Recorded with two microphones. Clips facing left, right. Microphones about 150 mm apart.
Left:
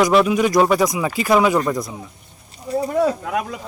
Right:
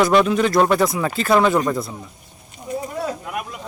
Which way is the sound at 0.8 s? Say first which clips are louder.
Even; 10° left (ahead or behind).